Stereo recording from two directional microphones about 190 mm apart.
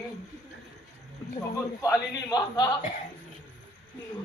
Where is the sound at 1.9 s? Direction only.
20° left (ahead or behind).